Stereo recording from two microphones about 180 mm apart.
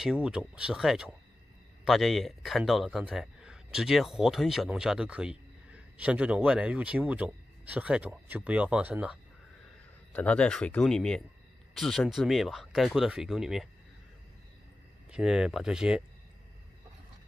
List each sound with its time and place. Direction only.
0.0 s speech: 5° right (ahead or behind)
10.1 s speech: 5° left (ahead or behind)
15.0 s speech: 5° right (ahead or behind)